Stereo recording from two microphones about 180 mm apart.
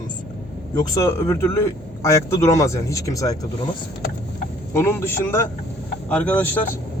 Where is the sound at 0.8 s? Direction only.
15° left (ahead or behind).